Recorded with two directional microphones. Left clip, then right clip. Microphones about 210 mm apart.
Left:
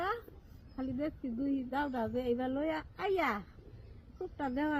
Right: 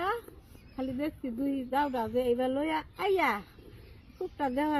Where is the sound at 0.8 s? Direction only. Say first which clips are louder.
Right 3 dB; 10° left (ahead or behind).